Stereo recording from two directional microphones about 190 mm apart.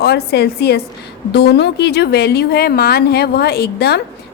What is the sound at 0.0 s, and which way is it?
A woman's voice, 60° left (ahead or behind).